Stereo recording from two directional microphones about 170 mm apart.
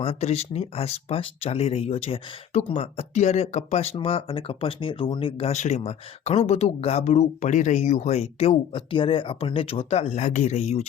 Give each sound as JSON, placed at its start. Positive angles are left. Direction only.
{"t": 0.0, "sound": "speech", "side_deg": 35}